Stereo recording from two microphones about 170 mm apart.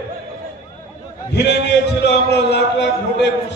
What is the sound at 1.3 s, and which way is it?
Speech, 90° left.